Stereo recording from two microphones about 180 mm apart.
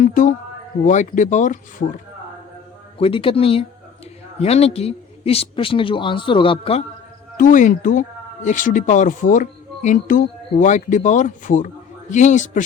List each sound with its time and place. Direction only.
0.0 s a sound: 45° left (ahead or behind)
0.9 s speech: 45° left (ahead or behind)
3.0 s a man's voice: 30° left (ahead or behind)
7.3 s speech: 45° left (ahead or behind)